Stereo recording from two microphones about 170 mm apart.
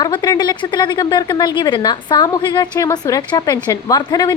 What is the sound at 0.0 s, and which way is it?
A woman's voice, 25° left (ahead or behind).